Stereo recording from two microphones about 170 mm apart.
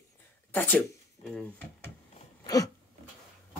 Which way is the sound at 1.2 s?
35° left (ahead or behind).